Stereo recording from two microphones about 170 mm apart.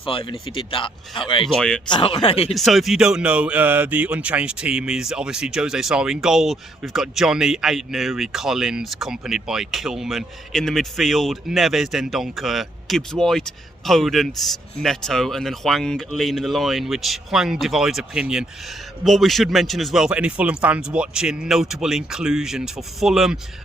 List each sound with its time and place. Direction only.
0.0 s speech: 30° left (ahead or behind)
1.5 s speech: 5° left (ahead or behind)
1.9 s speech: 30° left (ahead or behind)
2.6 s speech: centre (ahead or behind)